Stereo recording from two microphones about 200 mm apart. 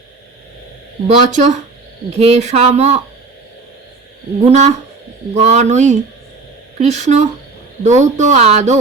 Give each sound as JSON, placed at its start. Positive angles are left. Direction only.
{"t": 1.0, "sound": "speech", "side_deg": -35}
{"t": 4.4, "sound": "speech", "side_deg": -35}